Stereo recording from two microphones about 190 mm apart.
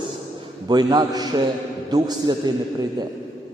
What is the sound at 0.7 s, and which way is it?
A man's voice, 20° right (ahead or behind).